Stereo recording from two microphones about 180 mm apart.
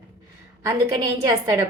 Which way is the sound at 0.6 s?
20° right (ahead or behind).